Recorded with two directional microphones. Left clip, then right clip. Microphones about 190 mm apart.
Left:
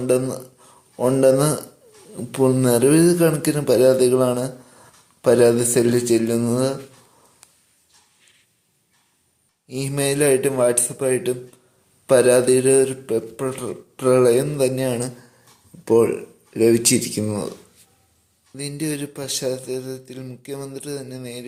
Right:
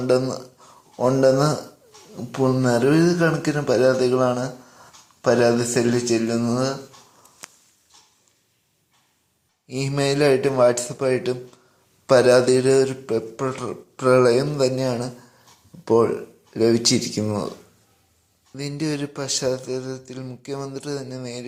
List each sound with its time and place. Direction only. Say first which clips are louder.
0.0 s speech: even; 10° left (ahead or behind)
0.6 s a sound: even; 10° left (ahead or behind)
2.3 s speech: left 2 dB; 25° left (ahead or behind)
9.6 s speech: even; centre (ahead or behind)
18.5 s speech: even; centre (ahead or behind)